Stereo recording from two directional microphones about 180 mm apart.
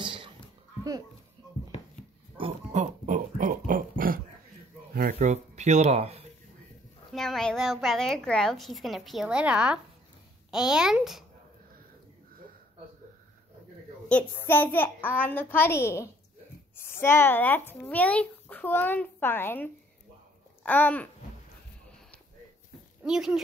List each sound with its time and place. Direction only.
0.0 s a sound: 25° right (ahead or behind)
2.7 s a sound: 45° right (ahead or behind)
5.2 s speech: 40° right (ahead or behind)
7.1 s a woman's voice: centre (ahead or behind)
14.0 s speech: 10° left (ahead or behind)
23.0 s a woman's voice: 5° right (ahead or behind)